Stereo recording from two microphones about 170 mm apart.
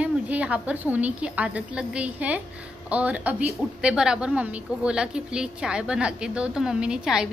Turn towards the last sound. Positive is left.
turn(degrees=-5)  # may be behind; listen again after turning